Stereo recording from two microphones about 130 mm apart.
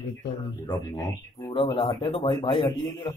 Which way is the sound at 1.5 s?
45° left (ahead or behind).